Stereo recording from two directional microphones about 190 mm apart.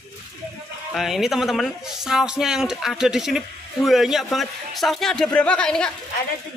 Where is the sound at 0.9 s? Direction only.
Centre (ahead or behind).